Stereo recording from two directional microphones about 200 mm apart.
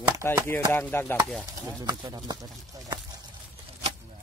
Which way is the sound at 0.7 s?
10° left (ahead or behind).